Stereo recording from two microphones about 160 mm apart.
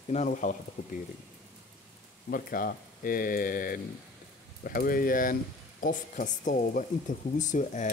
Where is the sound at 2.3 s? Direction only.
65° left (ahead or behind).